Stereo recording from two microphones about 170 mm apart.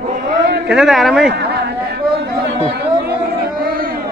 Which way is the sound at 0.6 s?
5° right (ahead or behind).